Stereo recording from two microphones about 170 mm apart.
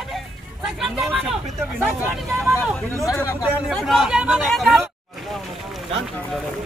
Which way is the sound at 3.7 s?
Centre (ahead or behind).